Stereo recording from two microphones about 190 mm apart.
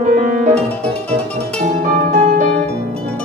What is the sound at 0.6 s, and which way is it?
Music, 5° left (ahead or behind).